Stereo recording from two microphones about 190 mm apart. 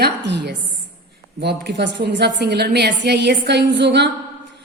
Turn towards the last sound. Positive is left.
turn(degrees=-65)  # may be behind; listen again after turning